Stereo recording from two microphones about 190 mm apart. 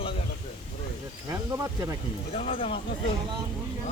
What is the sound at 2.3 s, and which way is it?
Speech, 30° left (ahead or behind).